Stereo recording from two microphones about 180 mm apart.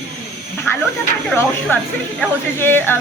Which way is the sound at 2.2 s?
10° left (ahead or behind).